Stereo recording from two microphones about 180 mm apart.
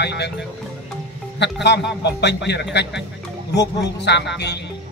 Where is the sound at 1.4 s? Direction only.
70° left (ahead or behind).